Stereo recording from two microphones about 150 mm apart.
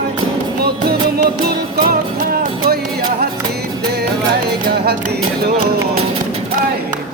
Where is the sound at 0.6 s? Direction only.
90° right.